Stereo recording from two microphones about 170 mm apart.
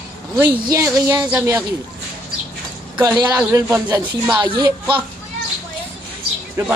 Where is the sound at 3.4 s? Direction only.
10° right (ahead or behind).